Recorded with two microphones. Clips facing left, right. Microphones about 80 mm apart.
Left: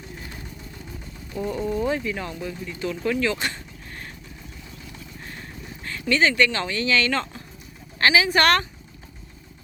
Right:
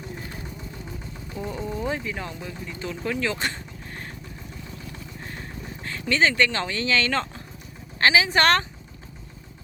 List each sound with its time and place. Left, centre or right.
0.2 s vehicle: right
1.3 s speech: right
4.9 s horse: right
7.9 s speech: right